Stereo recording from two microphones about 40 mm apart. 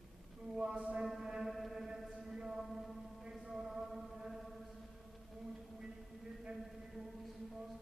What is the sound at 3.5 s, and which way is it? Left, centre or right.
Chant, centre.